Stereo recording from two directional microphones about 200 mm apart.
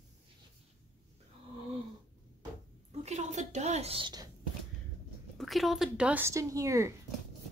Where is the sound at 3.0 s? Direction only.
35° right (ahead or behind).